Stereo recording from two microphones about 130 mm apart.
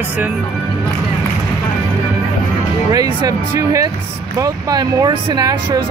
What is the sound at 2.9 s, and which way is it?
Speech, 30° right (ahead or behind).